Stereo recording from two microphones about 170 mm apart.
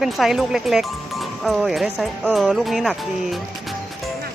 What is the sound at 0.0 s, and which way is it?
Speech, centre (ahead or behind).